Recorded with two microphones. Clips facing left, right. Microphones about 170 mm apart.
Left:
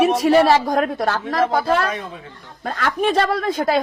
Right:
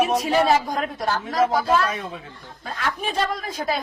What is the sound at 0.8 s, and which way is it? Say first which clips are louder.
A woman's voice: left 5 dB; 65° left (ahead or behind).